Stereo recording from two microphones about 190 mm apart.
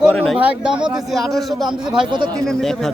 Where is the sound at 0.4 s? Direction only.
5° right (ahead or behind).